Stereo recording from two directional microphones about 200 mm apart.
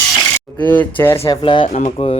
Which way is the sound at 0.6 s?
10° left (ahead or behind).